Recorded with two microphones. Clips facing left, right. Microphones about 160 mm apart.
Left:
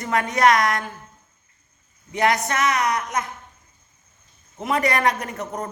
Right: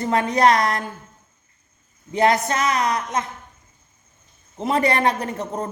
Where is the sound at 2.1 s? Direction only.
30° right (ahead or behind).